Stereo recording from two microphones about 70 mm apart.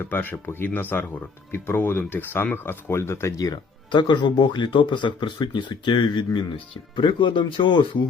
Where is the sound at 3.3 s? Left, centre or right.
Left.